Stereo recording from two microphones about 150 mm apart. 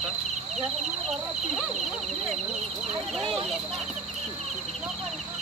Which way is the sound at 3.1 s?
Centre (ahead or behind).